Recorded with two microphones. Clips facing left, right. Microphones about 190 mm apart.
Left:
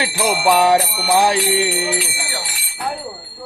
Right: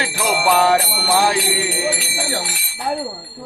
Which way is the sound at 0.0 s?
10° left (ahead or behind).